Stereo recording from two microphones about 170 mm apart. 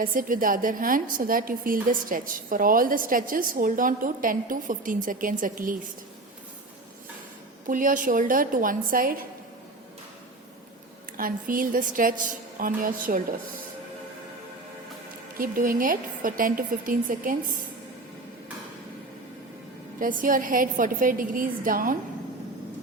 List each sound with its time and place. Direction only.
0.0 s a woman's voice: 55° right (ahead or behind)
7.7 s a woman's voice: 50° right (ahead or behind)
11.2 s a woman's voice: 55° right (ahead or behind)
15.4 s a woman's voice: 55° right (ahead or behind)
20.0 s a woman's voice: 50° right (ahead or behind)